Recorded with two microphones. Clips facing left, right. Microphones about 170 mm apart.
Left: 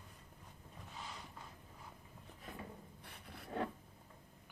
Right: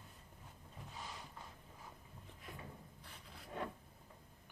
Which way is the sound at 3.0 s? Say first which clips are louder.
Left 3 dB; 60° left (ahead or behind).